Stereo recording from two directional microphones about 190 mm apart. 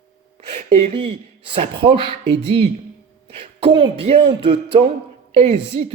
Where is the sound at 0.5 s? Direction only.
30° right (ahead or behind).